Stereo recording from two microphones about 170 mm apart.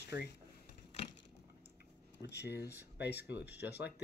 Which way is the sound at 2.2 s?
80° left.